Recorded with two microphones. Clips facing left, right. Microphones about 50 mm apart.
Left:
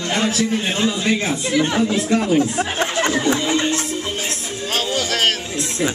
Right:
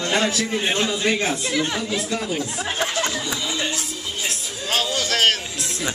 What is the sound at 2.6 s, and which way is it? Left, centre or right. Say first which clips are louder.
Chatter: left 4 dB; left.